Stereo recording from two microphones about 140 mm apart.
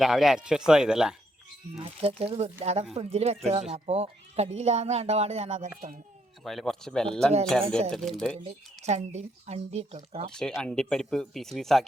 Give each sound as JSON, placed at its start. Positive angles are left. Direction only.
{"t": 0.0, "sound": "speech", "side_deg": 0}
{"t": 1.8, "sound": "speech", "side_deg": -45}
{"t": 6.4, "sound": "speech", "side_deg": 0}
{"t": 8.4, "sound": "speech", "side_deg": -55}
{"t": 10.3, "sound": "speech", "side_deg": 5}